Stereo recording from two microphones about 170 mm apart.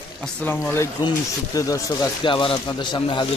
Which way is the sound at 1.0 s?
20° left (ahead or behind).